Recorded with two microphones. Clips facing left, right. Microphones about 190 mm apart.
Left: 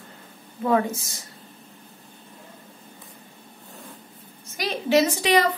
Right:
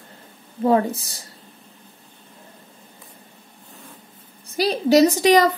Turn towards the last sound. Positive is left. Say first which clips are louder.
# right 6 dB
turn(degrees=-40)  # may be behind; listen again after turning